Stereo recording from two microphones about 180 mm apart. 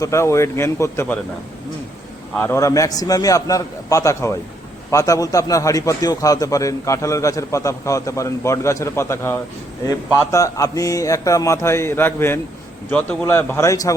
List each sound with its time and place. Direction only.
0.0 s a man's voice: 15° left (ahead or behind)
2.3 s a man's voice: 15° left (ahead or behind)